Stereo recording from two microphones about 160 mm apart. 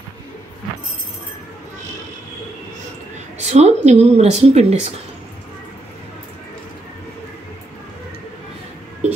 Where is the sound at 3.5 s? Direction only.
45° right (ahead or behind).